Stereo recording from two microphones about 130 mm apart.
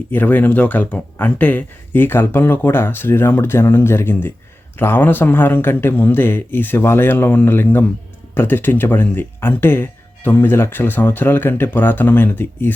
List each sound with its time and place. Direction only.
0.1 s speech: 15° left (ahead or behind)